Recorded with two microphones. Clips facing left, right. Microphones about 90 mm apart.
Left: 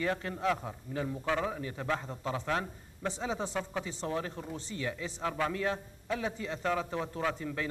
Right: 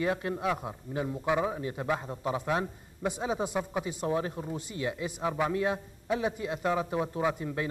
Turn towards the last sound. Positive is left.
turn(degrees=-15)  # may be behind; listen again after turning